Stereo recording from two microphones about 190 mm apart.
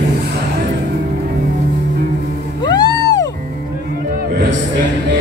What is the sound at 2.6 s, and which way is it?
Music, 20° left (ahead or behind).